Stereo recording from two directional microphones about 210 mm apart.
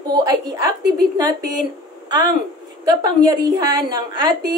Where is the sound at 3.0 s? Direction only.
20° right (ahead or behind).